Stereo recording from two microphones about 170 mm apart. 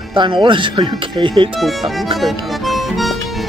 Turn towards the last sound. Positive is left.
turn(degrees=0)  # may be behind; listen again after turning